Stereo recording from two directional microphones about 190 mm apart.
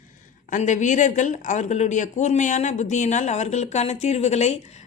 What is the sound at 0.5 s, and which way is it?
Speech, 40° left (ahead or behind).